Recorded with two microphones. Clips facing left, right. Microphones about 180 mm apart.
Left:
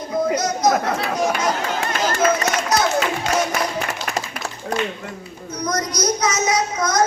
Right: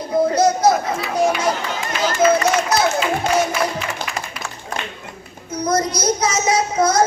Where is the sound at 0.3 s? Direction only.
30° right (ahead or behind).